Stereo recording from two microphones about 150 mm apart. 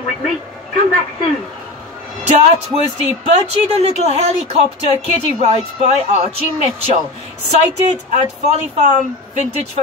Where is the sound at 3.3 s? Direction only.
45° right (ahead or behind).